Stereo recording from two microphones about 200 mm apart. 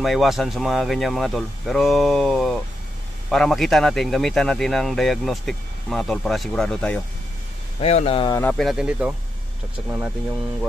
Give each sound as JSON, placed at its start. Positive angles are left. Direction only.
{"t": 0.0, "sound": "a man's voice", "side_deg": 0}
{"t": 7.8, "sound": "speech", "side_deg": 30}
{"t": 8.3, "sound": "a man's voice", "side_deg": 10}